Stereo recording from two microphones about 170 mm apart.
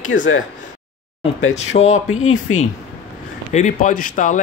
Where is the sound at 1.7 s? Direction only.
55° left (ahead or behind).